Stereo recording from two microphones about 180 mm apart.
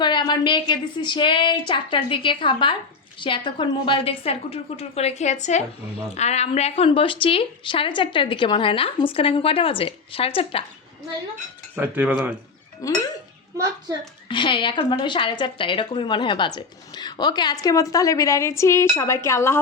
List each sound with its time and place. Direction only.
0.0 s a woman's voice: 25° left (ahead or behind)
11.7 s cutlery: 10° right (ahead or behind)
12.8 s speech: 20° left (ahead or behind)
14.3 s speech: 25° left (ahead or behind)